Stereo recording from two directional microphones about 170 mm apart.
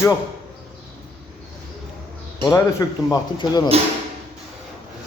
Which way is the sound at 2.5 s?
20° left (ahead or behind).